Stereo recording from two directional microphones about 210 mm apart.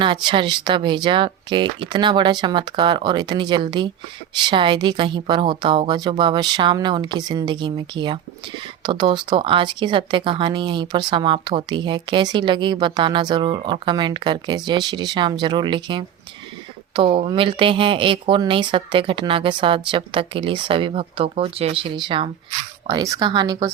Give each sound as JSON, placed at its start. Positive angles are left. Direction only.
{"t": 0.0, "sound": "speech", "side_deg": -20}